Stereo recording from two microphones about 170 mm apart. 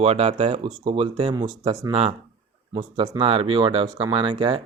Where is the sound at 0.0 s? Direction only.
35° right (ahead or behind).